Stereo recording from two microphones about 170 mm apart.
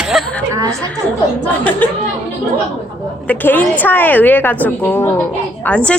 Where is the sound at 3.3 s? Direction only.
10° left (ahead or behind).